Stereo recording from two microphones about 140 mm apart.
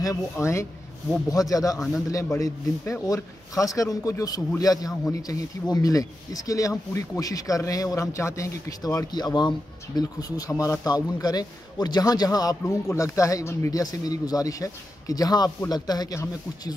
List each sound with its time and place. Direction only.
0.0 s speech: 20° left (ahead or behind)